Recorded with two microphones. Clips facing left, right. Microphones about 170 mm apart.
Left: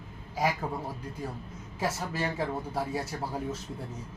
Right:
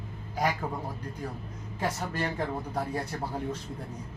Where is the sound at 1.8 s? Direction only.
5° left (ahead or behind).